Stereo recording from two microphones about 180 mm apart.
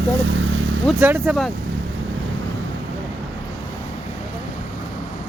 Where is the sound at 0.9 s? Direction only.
10° right (ahead or behind).